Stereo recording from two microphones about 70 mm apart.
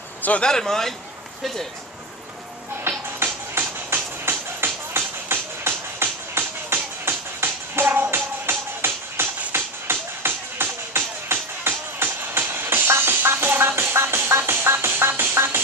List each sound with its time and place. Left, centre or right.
0.2 s speech: left
0.5 s speech: centre
2.9 s music: right